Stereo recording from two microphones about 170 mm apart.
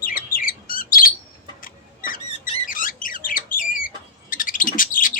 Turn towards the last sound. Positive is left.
turn(degrees=55)  # may be behind; listen again after turning